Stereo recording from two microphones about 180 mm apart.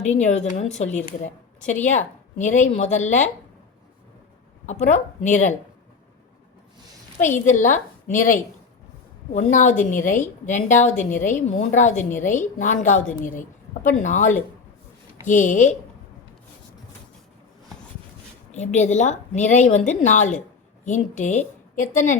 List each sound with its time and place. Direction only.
0.0 s a woman's voice: 40° left (ahead or behind)
4.6 s a woman's voice: 40° left (ahead or behind)
7.2 s a woman's voice: 45° left (ahead or behind)
18.5 s a woman's voice: 40° left (ahead or behind)